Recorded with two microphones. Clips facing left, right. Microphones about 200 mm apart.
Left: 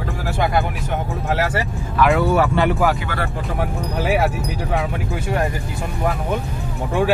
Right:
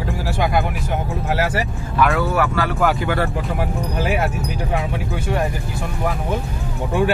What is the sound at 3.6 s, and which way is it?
Speech, centre (ahead or behind).